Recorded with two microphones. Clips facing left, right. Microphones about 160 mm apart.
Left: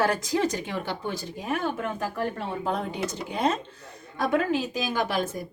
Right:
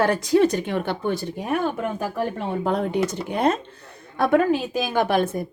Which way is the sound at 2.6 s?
60° right (ahead or behind).